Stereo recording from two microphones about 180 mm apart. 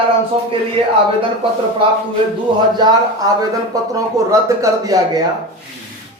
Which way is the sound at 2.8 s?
20° right (ahead or behind).